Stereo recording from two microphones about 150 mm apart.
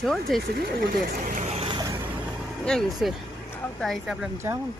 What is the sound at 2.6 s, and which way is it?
Speech, 5° left (ahead or behind).